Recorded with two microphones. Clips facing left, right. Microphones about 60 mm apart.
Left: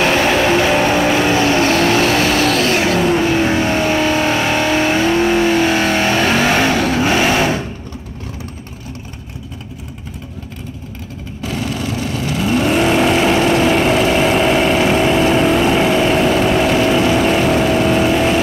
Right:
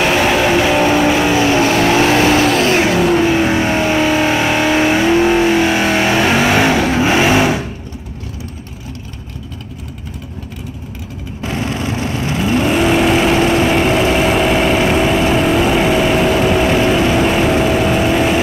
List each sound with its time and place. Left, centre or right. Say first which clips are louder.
0.0 s vehicle: right 1 dB; centre
3.0 s vehicle: right 2 dB; centre
11.4 s vehicle: right 1 dB; right
12.6 s vehicle: even; centre